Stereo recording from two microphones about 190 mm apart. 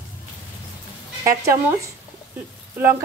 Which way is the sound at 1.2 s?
15° right (ahead or behind).